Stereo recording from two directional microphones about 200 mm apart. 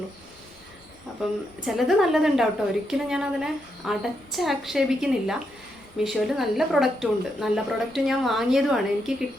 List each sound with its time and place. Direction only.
1.6 s a woman's voice: centre (ahead or behind)